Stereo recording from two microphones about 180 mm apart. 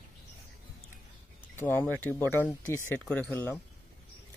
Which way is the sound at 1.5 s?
10° left (ahead or behind).